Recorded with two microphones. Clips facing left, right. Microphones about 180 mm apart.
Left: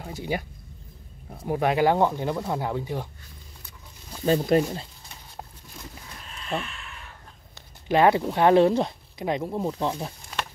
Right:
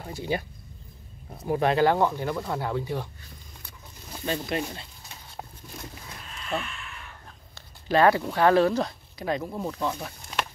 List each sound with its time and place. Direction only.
0.0 s speech: 15° left (ahead or behind)
1.5 s speech: 15° left (ahead or behind)
4.2 s speech: 40° left (ahead or behind)
7.5 s speech: 15° left (ahead or behind)